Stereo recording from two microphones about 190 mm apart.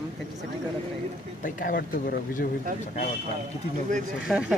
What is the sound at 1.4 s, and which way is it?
Speech, 45° left (ahead or behind).